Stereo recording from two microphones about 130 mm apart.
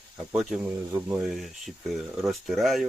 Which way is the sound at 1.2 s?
Centre (ahead or behind).